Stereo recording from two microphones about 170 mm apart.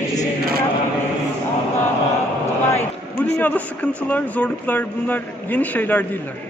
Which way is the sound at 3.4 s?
10° left (ahead or behind).